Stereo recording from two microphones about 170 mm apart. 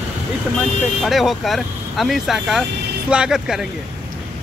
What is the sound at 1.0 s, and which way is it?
Speech, centre (ahead or behind).